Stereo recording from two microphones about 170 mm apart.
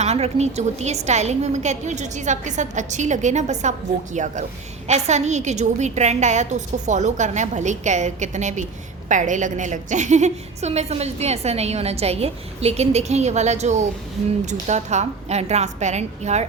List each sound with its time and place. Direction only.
0.0 s a woman's voice: 40° right (ahead or behind)